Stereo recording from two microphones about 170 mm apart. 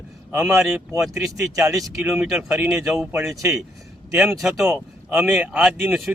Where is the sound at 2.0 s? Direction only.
5° right (ahead or behind).